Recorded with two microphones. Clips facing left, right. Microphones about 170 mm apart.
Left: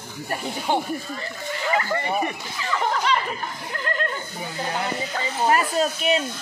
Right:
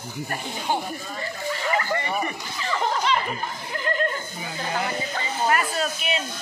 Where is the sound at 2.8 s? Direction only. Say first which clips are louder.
Left 1 dB; centre (ahead or behind).